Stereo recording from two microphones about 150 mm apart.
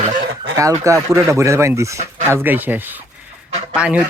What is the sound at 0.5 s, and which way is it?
Speech, 20° right (ahead or behind).